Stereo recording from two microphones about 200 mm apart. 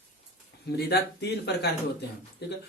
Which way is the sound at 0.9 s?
55° left (ahead or behind).